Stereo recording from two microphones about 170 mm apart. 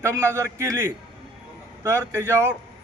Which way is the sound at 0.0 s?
15° right (ahead or behind).